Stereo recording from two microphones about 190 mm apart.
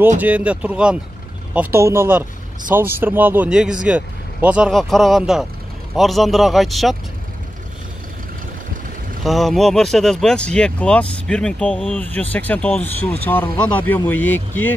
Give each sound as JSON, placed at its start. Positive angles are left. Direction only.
{"t": 0.2, "sound": "speech", "side_deg": -5}
{"t": 9.2, "sound": "speech", "side_deg": 0}